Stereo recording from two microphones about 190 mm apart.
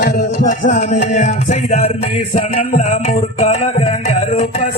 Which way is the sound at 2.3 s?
40° left (ahead or behind).